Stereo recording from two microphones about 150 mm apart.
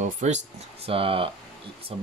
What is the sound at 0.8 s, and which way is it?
Speech, 40° right (ahead or behind).